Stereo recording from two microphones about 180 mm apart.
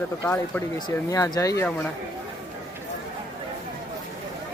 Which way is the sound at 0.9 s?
20° left (ahead or behind).